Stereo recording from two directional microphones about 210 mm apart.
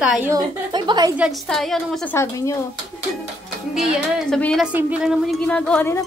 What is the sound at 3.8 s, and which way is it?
A woman's voice, centre (ahead or behind).